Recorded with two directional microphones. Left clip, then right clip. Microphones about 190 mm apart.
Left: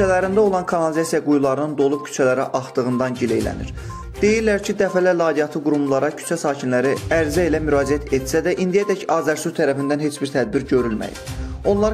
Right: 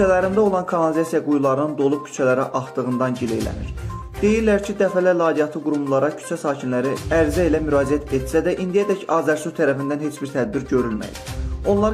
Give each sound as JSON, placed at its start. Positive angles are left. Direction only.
{"t": 0.0, "sound": "speech", "side_deg": 25}
{"t": 4.2, "sound": "speech", "side_deg": 25}